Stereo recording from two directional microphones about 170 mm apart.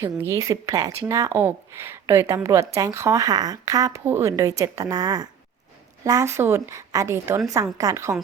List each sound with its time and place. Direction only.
0.0 s a woman's voice: 15° right (ahead or behind)